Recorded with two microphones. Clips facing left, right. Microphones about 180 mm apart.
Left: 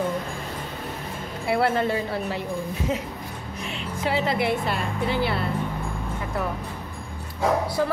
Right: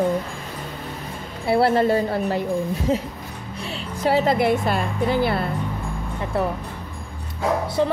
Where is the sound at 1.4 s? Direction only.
30° right (ahead or behind).